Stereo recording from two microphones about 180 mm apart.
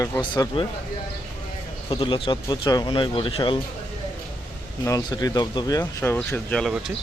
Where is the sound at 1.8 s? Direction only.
30° left (ahead or behind).